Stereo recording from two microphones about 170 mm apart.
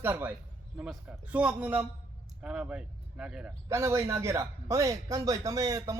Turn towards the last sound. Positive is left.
turn(degrees=-20)  # may be behind; listen again after turning